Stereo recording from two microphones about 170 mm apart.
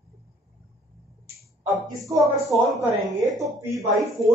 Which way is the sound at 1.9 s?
20° right (ahead or behind).